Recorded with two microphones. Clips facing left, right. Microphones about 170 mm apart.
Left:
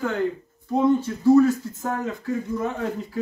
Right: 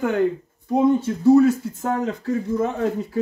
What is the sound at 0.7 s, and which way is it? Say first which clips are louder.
Speech: right 2 dB; 20° right (ahead or behind).